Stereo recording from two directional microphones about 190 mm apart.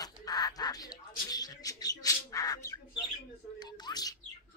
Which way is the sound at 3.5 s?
20° left (ahead or behind).